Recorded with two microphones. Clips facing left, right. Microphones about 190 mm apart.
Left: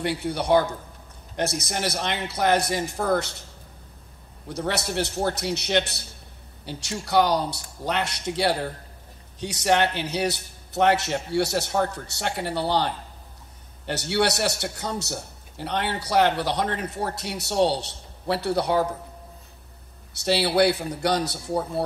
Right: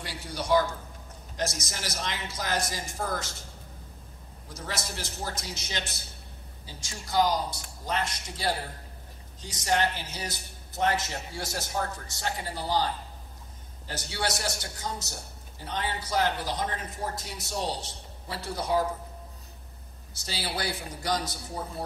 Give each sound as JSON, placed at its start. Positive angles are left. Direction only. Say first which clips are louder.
{"t": 0.0, "sound": "a man's voice", "louder": "left 10 dB", "side_deg": 60}
{"t": 4.5, "sound": "a man's voice", "louder": "left 9 dB", "side_deg": 65}
{"t": 20.2, "sound": "a man's voice", "louder": "left 14 dB", "side_deg": 70}